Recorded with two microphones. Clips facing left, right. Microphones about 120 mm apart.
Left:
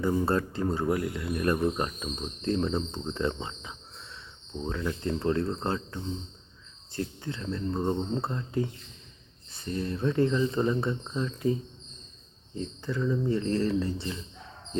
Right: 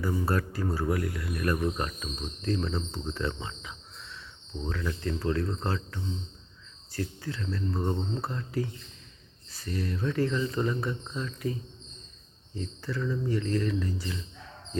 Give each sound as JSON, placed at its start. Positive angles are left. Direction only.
{"t": 0.0, "sound": "speech", "side_deg": 25}
{"t": 12.5, "sound": "speech", "side_deg": 20}